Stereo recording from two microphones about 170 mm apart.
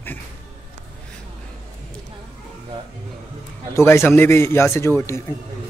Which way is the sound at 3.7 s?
15° left (ahead or behind).